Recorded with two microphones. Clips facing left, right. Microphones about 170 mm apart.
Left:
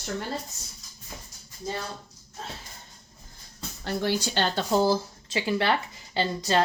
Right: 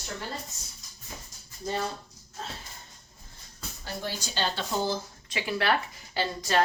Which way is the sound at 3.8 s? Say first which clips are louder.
Left 9 dB; 75° left (ahead or behind).